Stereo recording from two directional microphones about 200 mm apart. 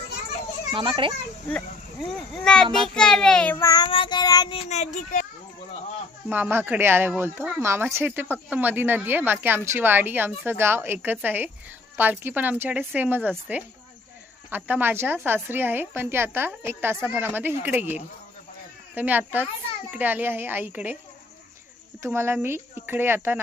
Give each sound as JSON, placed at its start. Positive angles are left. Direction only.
{"t": 0.7, "sound": "a child's voice", "side_deg": -25}
{"t": 2.3, "sound": "a child's voice", "side_deg": 5}
{"t": 6.2, "sound": "speech", "side_deg": -10}
{"t": 22.0, "sound": "speech", "side_deg": -15}